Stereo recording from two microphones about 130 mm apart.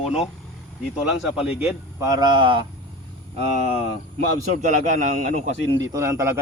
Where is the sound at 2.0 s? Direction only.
30° right (ahead or behind).